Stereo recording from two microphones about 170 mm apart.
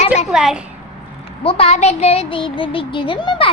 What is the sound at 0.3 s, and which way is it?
Speech, 5° right (ahead or behind).